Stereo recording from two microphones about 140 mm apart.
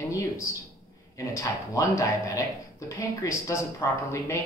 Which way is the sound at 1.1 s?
25° left (ahead or behind).